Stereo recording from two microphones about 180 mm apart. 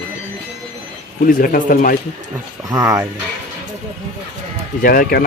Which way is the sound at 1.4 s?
50° left (ahead or behind).